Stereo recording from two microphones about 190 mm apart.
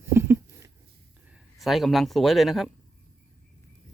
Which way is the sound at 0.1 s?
15° right (ahead or behind).